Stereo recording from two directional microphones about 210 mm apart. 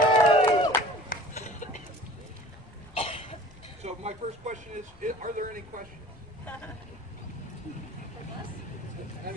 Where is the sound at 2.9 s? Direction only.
25° left (ahead or behind).